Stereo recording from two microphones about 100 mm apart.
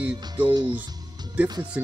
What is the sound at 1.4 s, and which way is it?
Speech, 15° right (ahead or behind).